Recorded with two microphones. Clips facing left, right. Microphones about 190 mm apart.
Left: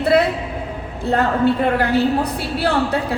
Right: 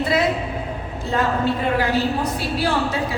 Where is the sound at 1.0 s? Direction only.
60° left (ahead or behind).